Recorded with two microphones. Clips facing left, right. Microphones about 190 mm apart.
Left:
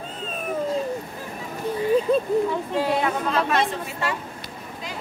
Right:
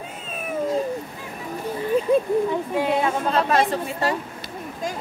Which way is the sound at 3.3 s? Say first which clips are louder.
Right 2 dB; 35° right (ahead or behind).